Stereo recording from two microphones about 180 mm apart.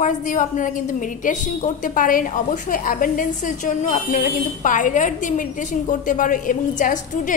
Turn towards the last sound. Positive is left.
turn(degrees=45)  # may be behind; listen again after turning